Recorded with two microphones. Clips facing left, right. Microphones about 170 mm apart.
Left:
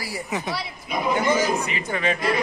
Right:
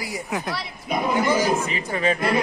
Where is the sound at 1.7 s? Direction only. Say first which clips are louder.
Right 2 dB; 35° right (ahead or behind).